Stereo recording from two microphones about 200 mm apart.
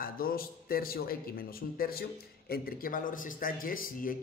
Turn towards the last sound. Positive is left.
turn(degrees=45)  # may be behind; listen again after turning